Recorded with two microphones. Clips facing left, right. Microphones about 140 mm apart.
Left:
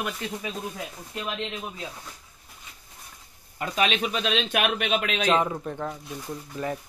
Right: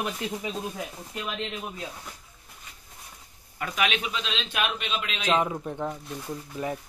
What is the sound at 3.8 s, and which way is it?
Speech, 35° left (ahead or behind).